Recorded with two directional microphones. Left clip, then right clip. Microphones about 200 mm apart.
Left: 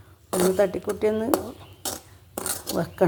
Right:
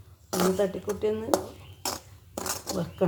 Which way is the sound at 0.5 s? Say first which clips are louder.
Left 5 dB; 40° left (ahead or behind).